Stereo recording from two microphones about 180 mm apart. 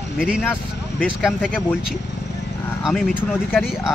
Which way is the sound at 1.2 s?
5° right (ahead or behind).